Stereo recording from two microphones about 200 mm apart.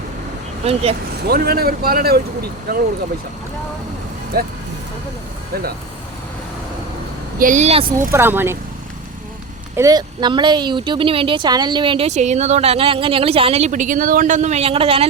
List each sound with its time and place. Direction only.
0.6 s speech: 30° right (ahead or behind)
1.3 s a man's voice: 50° right (ahead or behind)
4.3 s a man's voice: 50° right (ahead or behind)
7.3 s speech: 40° right (ahead or behind)
8.1 s speech: 10° right (ahead or behind)
9.7 s speech: 15° right (ahead or behind)